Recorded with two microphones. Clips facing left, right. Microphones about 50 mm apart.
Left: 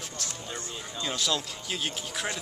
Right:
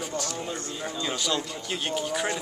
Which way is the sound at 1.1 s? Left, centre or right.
Centre.